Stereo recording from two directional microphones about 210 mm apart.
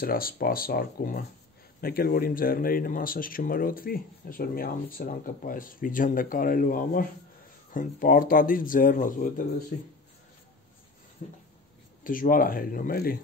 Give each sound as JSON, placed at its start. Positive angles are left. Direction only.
{"t": 0.0, "sound": "speech", "side_deg": 45}
{"t": 11.2, "sound": "speech", "side_deg": 35}